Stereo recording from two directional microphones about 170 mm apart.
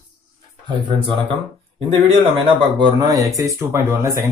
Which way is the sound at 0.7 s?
30° right (ahead or behind).